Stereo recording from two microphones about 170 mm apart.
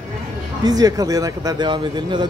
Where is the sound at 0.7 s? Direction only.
20° right (ahead or behind).